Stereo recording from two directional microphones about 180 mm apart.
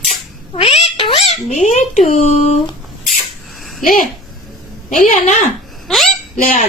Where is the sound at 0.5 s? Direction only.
35° left (ahead or behind).